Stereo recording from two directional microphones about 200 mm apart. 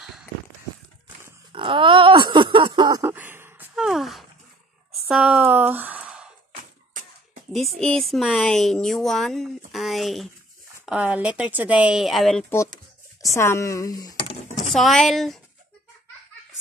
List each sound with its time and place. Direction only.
1.5 s a sound: 25° right (ahead or behind); by 4.2 s centre (ahead or behind)
5.0 s speech: 5° right (ahead or behind)
7.5 s a woman's voice: centre (ahead or behind)
13.3 s speech: 15° left (ahead or behind)
14.7 s a woman's voice: centre (ahead or behind)